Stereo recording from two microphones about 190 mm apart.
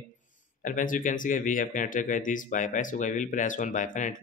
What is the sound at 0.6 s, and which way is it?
A man's voice, 45° left (ahead or behind).